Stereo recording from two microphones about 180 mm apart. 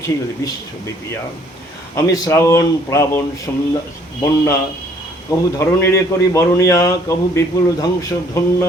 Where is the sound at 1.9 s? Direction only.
20° left (ahead or behind).